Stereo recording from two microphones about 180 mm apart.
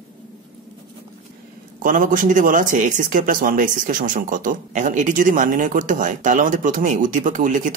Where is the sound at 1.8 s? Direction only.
50° right (ahead or behind).